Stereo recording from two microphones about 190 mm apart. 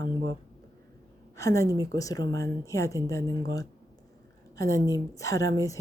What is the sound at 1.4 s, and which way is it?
A woman's voice, 15° left (ahead or behind).